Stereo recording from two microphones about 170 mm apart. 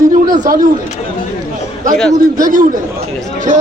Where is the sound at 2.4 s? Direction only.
50° right (ahead or behind).